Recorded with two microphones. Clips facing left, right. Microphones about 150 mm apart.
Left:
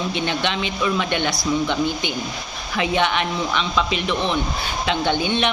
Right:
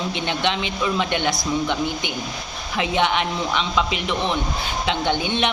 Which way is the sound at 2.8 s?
20° right (ahead or behind).